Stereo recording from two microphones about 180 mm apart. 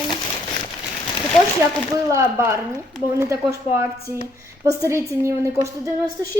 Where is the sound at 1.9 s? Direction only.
15° right (ahead or behind).